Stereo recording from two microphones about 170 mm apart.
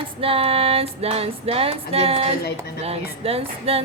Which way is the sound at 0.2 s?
35° right (ahead or behind).